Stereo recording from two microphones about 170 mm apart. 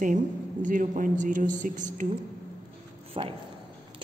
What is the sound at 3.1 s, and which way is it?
Speech, 35° right (ahead or behind).